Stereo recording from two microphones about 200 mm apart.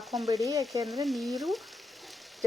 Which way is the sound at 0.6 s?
Centre (ahead or behind).